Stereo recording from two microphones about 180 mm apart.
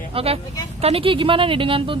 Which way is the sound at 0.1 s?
35° right (ahead or behind).